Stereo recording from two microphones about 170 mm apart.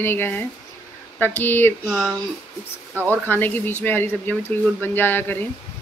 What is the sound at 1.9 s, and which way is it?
Speech, centre (ahead or behind).